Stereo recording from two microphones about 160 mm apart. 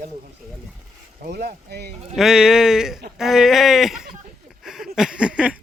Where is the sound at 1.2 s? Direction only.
80° right.